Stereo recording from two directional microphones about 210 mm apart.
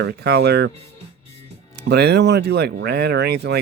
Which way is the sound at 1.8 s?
50° right (ahead or behind).